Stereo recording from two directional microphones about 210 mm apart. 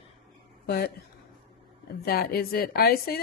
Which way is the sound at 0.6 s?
50° left (ahead or behind).